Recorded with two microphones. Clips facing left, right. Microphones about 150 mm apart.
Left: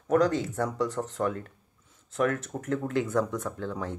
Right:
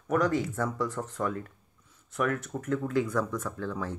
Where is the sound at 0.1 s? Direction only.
20° left (ahead or behind).